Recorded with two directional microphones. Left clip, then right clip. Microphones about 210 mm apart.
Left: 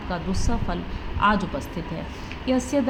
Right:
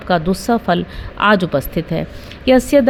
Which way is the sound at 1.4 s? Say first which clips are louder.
Right 12 dB; 75° right (ahead or behind).